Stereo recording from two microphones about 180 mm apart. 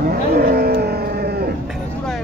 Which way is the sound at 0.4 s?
60° right (ahead or behind).